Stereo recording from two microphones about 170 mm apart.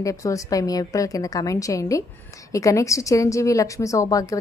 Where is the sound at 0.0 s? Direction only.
20° left (ahead or behind).